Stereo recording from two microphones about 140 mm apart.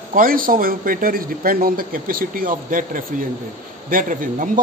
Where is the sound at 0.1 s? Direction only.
90° right.